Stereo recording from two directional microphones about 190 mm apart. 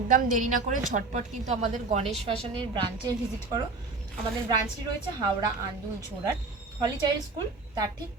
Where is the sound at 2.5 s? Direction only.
25° right (ahead or behind).